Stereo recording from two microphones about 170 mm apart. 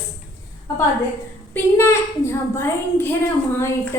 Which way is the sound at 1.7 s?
15° left (ahead or behind).